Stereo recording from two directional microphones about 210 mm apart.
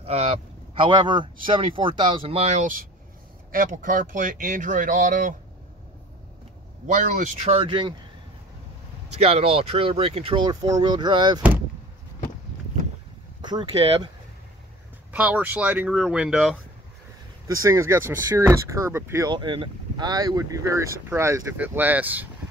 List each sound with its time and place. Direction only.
0.0 s a man's voice: 30° right (ahead or behind)
6.9 s speech: 35° right (ahead or behind)
9.1 s speech: 30° right (ahead or behind)
13.4 s speech: 20° right (ahead or behind)
15.1 s speech: 10° right (ahead or behind)
17.6 s speech: 15° right (ahead or behind)